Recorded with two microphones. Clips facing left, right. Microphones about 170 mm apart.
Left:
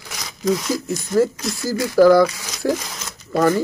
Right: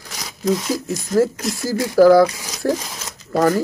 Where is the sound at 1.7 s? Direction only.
20° right (ahead or behind).